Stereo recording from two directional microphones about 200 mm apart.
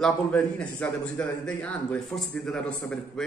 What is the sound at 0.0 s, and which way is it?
A man's voice, 5° left (ahead or behind).